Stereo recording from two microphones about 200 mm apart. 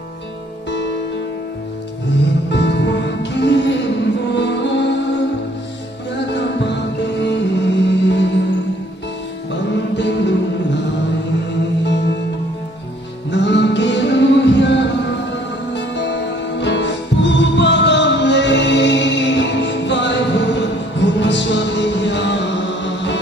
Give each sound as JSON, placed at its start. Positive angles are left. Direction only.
{"t": 2.5, "sound": "music", "side_deg": 60}
{"t": 6.3, "sound": "music", "side_deg": 60}
{"t": 9.5, "sound": "music", "side_deg": 60}
{"t": 11.8, "sound": "music", "side_deg": 60}
{"t": 13.3, "sound": "music", "side_deg": 60}